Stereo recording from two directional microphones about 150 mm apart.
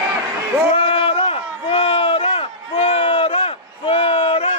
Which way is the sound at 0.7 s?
40° left (ahead or behind).